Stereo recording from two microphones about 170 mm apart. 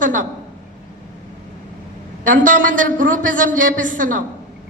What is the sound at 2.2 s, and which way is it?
A woman's voice, 50° right (ahead or behind).